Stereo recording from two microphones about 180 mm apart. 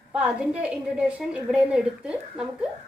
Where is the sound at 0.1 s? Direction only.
5° right (ahead or behind).